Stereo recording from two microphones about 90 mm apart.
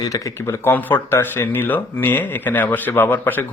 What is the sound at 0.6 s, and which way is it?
Speech, 20° left (ahead or behind).